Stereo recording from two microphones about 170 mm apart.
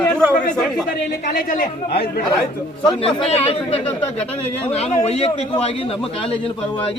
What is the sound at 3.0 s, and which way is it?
Speech, 30° left (ahead or behind).